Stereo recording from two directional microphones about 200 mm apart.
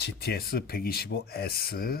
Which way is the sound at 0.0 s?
55° left (ahead or behind).